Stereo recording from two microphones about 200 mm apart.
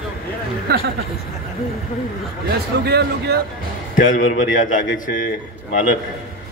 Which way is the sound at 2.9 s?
55° right (ahead or behind).